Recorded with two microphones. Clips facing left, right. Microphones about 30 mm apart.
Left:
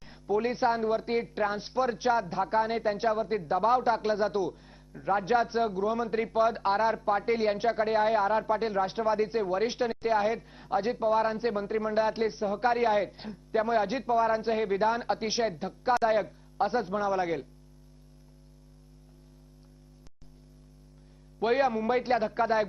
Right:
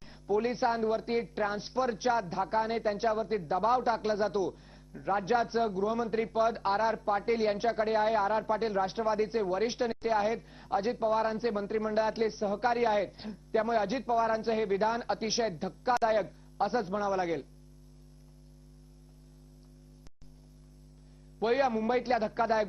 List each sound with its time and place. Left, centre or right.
0.3 s speech: centre
21.3 s speech: centre